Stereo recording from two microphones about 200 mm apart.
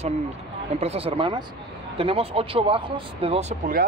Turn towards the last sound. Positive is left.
turn(degrees=-30)  # may be behind; listen again after turning